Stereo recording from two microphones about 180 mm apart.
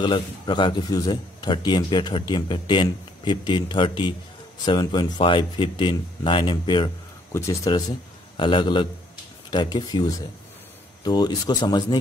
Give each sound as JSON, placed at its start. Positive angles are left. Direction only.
{"t": 0.0, "sound": "a man's voice", "side_deg": 25}